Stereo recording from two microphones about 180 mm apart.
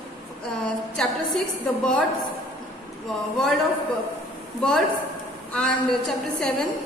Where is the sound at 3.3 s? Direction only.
Centre (ahead or behind).